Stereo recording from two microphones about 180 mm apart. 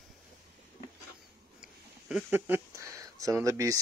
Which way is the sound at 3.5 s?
15° right (ahead or behind).